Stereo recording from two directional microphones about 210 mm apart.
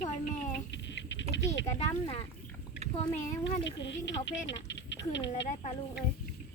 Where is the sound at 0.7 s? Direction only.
60° left (ahead or behind).